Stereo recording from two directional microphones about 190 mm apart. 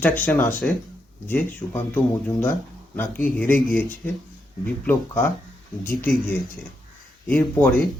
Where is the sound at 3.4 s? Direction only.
45° left (ahead or behind).